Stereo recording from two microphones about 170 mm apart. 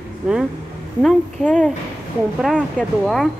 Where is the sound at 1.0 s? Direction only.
5° left (ahead or behind).